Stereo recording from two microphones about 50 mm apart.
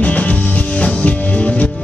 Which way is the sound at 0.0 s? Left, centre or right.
Left.